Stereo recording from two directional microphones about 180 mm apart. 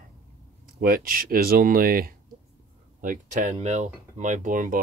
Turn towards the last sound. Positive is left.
turn(degrees=-45)  # may be behind; listen again after turning